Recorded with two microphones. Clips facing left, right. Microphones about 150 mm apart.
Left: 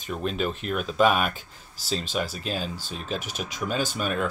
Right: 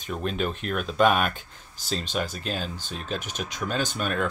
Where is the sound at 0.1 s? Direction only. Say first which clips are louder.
Even; centre (ahead or behind).